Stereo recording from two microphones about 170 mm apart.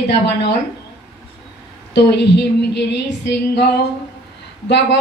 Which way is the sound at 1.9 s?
90° left.